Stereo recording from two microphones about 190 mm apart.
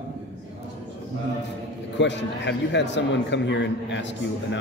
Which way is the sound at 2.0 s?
70° left (ahead or behind).